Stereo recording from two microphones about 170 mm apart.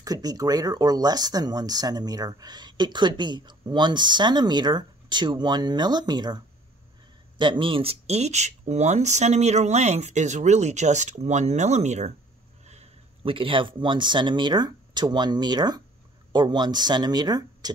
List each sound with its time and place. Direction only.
0.0 s speech: 20° right (ahead or behind)